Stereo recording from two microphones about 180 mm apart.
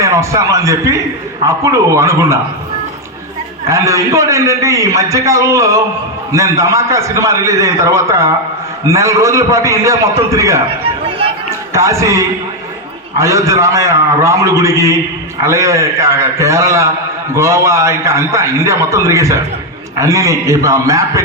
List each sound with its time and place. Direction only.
0.0 s a man's voice: 15° right (ahead or behind)
3.7 s a man's voice: 15° right (ahead or behind)
11.7 s a man's voice: 15° right (ahead or behind)